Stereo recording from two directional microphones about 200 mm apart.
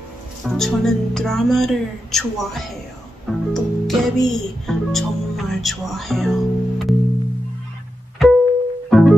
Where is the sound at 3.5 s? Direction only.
Centre (ahead or behind).